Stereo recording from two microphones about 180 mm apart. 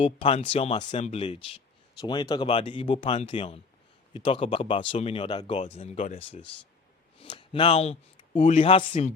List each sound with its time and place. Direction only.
0.0 s speech: 35° left (ahead or behind)